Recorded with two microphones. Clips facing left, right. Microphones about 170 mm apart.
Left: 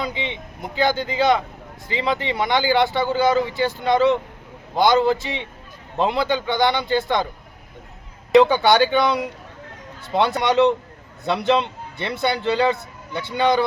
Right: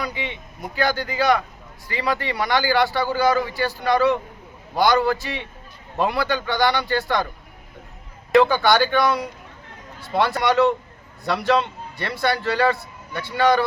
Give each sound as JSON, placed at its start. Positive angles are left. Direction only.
{"t": 0.0, "sound": "a man's voice", "side_deg": 25}
{"t": 8.3, "sound": "a man's voice", "side_deg": 20}